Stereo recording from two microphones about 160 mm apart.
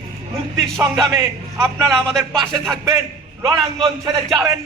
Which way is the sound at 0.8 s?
20° right (ahead or behind).